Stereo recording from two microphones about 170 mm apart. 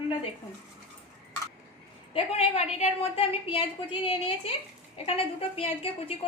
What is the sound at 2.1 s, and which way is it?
A woman's voice, 40° left (ahead or behind).